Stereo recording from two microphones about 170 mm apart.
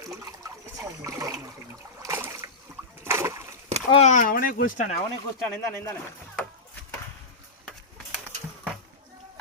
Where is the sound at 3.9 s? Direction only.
45° left (ahead or behind).